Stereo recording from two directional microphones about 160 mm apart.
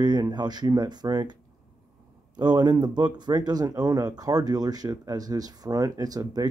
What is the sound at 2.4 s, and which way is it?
Speech, 25° right (ahead or behind).